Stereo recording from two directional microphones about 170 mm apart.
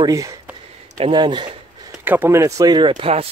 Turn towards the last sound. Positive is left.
turn(degrees=-30)  # may be behind; listen again after turning